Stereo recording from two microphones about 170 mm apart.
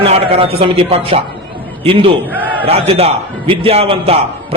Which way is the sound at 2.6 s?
35° right (ahead or behind).